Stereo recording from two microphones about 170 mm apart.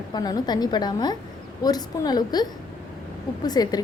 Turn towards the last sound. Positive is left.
turn(degrees=25)  # may be behind; listen again after turning